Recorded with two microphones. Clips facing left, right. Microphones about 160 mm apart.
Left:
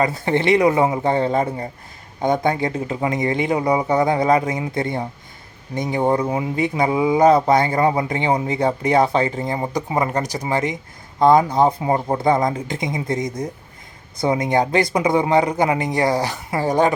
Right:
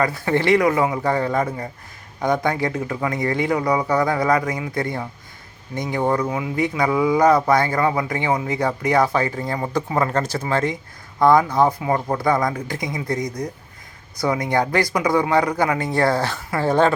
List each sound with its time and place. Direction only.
0.0 s speech: 25° left (ahead or behind)